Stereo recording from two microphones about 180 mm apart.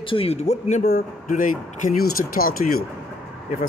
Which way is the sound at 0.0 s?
30° left (ahead or behind).